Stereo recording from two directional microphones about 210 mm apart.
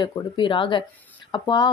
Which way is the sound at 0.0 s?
25° left (ahead or behind).